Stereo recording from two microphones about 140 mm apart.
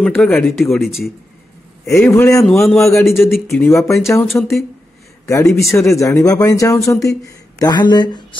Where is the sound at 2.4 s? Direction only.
Centre (ahead or behind).